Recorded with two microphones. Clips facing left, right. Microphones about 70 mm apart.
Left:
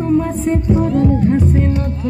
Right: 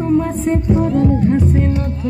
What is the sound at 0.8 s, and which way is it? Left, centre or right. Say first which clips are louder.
Music: even; centre.